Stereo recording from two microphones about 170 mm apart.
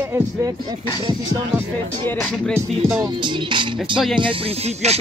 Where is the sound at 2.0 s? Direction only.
5° left (ahead or behind).